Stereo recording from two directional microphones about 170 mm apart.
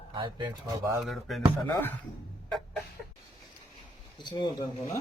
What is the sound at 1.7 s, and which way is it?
Speech, 15° left (ahead or behind).